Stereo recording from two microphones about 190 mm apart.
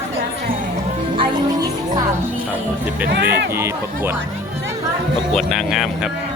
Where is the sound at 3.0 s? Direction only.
55° right (ahead or behind).